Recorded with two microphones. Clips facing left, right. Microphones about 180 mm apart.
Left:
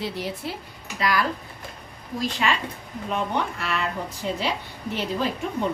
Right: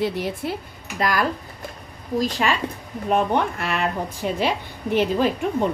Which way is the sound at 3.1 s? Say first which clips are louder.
Right 6 dB; 55° right (ahead or behind).